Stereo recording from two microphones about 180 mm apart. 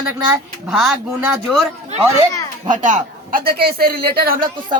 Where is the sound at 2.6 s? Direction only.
45° right (ahead or behind).